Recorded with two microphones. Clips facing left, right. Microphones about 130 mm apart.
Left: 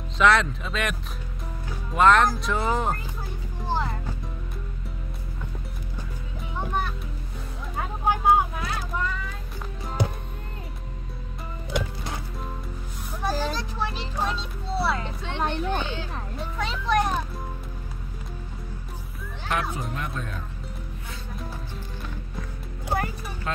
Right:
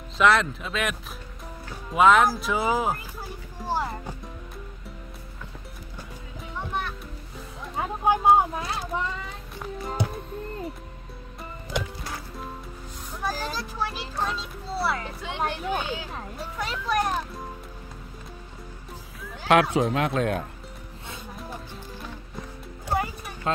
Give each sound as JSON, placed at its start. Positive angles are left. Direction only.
{"t": 0.2, "sound": "a child's voice", "side_deg": 0}
{"t": 3.6, "sound": "music", "side_deg": -5}
{"t": 8.1, "sound": "vehicle", "side_deg": -25}
{"t": 9.6, "sound": "music", "side_deg": 0}
{"t": 13.2, "sound": "a sound", "side_deg": 0}
{"t": 14.2, "sound": "a child's voice", "side_deg": 0}
{"t": 19.4, "sound": "speech", "side_deg": -80}
{"t": 23.5, "sound": "speech", "side_deg": -25}